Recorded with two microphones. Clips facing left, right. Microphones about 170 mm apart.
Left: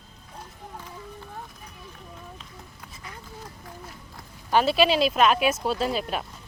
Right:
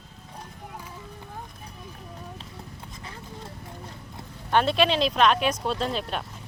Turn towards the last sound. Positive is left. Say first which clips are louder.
# left 2 dB
turn(degrees=5)  # may be behind; listen again after turning